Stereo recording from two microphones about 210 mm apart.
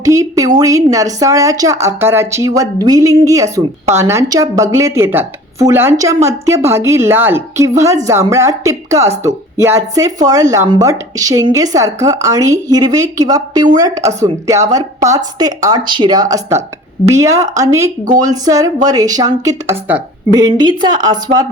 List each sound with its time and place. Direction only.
0.0 s a woman's voice: 15° right (ahead or behind)